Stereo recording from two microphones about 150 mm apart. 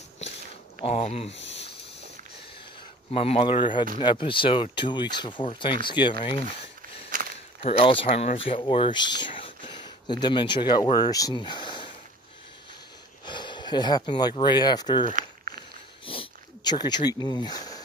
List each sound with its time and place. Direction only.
0.7 s speech: 40° left (ahead or behind)
3.1 s speech: 40° left (ahead or behind)
7.1 s walk: 70° right (ahead or behind)
7.6 s speech: 35° left (ahead or behind)
13.2 s speech: 30° left (ahead or behind)
15.1 s a sound: 65° right (ahead or behind)
16.1 s a sound: 35° left (ahead or behind)